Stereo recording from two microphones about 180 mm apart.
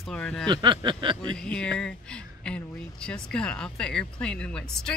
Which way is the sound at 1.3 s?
5° left (ahead or behind).